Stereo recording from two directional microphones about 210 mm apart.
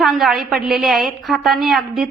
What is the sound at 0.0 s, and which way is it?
A woman's voice, centre (ahead or behind).